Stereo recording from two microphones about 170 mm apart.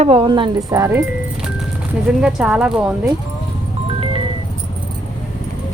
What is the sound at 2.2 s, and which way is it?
Speech, 5° right (ahead or behind).